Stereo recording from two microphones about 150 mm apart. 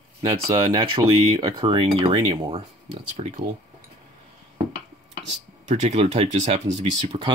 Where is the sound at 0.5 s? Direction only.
25° right (ahead or behind).